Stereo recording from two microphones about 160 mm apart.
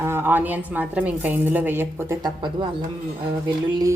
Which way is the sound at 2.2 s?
25° right (ahead or behind).